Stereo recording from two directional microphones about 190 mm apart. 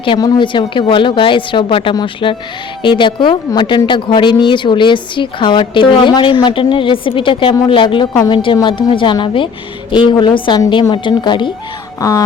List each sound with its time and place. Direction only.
0.0 s speech: 25° left (ahead or behind)